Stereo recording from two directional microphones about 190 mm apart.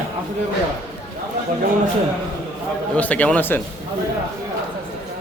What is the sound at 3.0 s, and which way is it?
Speech, 10° left (ahead or behind).